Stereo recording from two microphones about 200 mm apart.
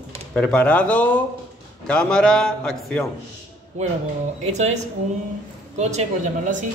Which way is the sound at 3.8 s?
35° right (ahead or behind).